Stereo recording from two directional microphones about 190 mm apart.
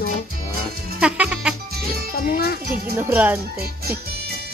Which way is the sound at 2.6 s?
50° right (ahead or behind).